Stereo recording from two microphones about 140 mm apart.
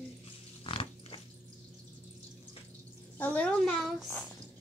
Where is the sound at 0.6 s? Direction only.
40° left (ahead or behind).